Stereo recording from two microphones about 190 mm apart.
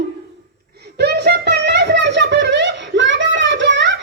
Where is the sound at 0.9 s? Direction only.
60° right (ahead or behind).